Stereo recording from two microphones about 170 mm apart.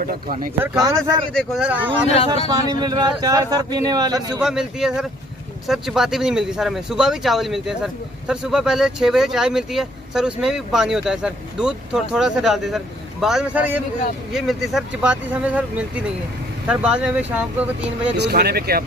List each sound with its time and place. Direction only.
0.0 s speech: 55° right (ahead or behind)
1.3 s speech: 5° right (ahead or behind)
2.0 s speech: 35° left (ahead or behind)
2.6 s a man's voice: 25° right (ahead or behind)
4.4 s speech: 5° right (ahead or behind)
16.6 s speech: 5° right (ahead or behind)
18.1 s speech: 70° right (ahead or behind)